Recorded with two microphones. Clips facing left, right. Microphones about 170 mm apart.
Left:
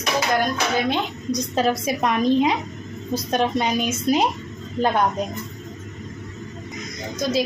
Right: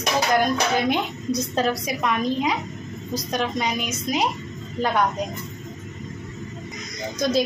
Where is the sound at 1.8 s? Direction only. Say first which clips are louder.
Left 4 dB; 25° left (ahead or behind).